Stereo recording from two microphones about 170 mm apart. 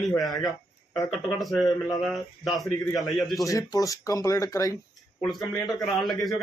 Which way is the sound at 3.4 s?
20° left (ahead or behind).